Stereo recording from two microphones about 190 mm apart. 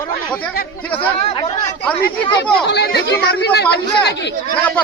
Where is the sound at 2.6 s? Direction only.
60° left (ahead or behind).